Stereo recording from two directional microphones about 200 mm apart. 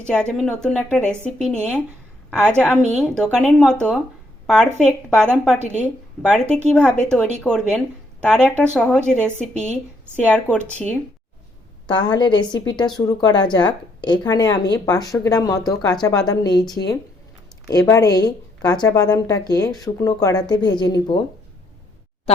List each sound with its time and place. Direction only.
0.0 s speech: 5° left (ahead or behind)
11.9 s a woman's voice: 20° left (ahead or behind)